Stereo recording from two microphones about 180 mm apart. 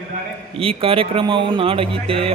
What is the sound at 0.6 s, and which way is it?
A man's voice, 30° right (ahead or behind).